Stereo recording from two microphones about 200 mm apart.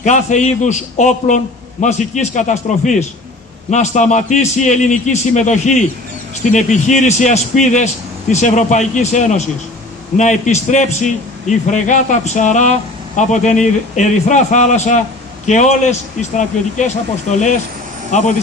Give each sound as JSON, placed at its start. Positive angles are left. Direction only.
{"t": 0.0, "sound": "a man's voice", "side_deg": 35}